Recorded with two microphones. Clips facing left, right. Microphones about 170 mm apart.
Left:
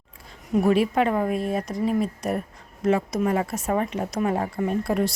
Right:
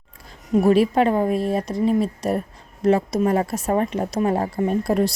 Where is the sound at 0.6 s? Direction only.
35° right (ahead or behind).